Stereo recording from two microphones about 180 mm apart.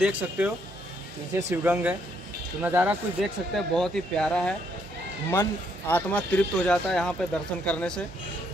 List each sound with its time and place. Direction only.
0.0 s speech: 10° right (ahead or behind)
3.5 s speech: centre (ahead or behind)